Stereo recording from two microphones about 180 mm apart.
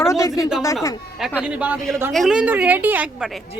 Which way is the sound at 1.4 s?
5° right (ahead or behind).